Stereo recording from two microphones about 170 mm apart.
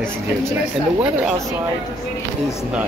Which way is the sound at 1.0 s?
5° right (ahead or behind).